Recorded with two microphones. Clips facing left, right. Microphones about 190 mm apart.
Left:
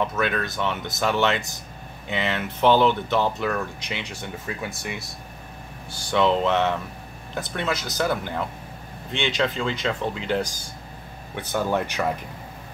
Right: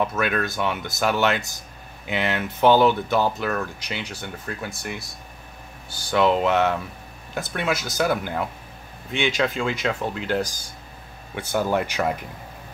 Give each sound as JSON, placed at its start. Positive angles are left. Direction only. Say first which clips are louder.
{"t": 0.0, "sound": "speech", "louder": "right 1 dB", "side_deg": -5}